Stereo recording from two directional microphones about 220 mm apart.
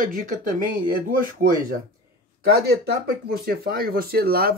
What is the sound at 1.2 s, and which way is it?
Speech, 40° right (ahead or behind).